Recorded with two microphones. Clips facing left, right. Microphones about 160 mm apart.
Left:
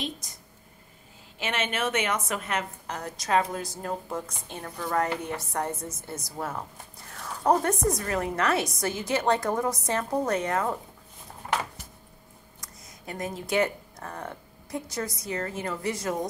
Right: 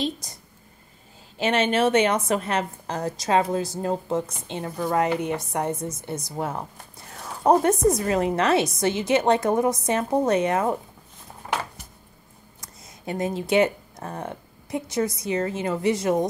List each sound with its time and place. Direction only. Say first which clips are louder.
0.2 s a sound: right 4 dB; 35° right (ahead or behind)
1.4 s a woman's voice: right 9 dB; 35° right (ahead or behind)
12.5 s speech: right 3 dB; 25° right (ahead or behind)